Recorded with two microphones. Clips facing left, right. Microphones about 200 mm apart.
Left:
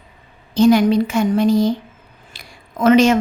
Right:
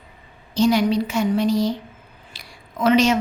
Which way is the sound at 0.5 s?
50° left (ahead or behind).